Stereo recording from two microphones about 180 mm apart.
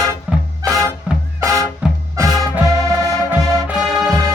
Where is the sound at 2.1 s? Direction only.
20° right (ahead or behind).